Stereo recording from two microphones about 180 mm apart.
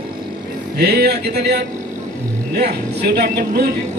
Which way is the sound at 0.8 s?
60° right (ahead or behind).